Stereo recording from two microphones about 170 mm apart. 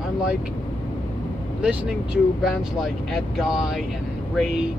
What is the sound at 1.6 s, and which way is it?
Speech, 5° right (ahead or behind).